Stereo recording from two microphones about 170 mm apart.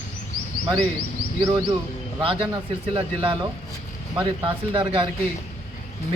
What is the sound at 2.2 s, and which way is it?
A man's voice, 30° right (ahead or behind).